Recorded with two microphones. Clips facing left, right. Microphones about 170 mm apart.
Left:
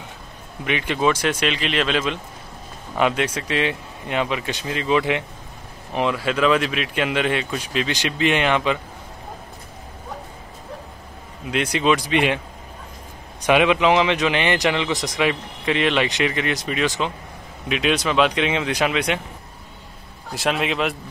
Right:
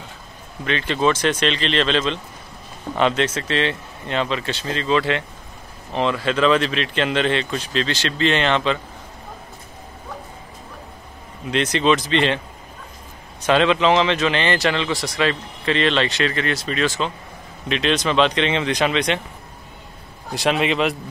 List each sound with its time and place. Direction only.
0.7 s speech: 15° left (ahead or behind)
11.5 s speech: 10° left (ahead or behind)
13.5 s speech: 15° left (ahead or behind)
20.3 s a man's voice: centre (ahead or behind)